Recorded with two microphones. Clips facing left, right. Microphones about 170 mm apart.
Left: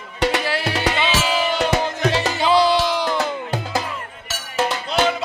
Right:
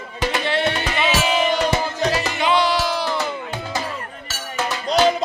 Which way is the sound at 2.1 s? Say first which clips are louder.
Left 3 dB; 30° left (ahead or behind).